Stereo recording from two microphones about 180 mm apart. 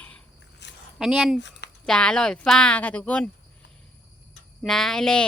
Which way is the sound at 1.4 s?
80° left.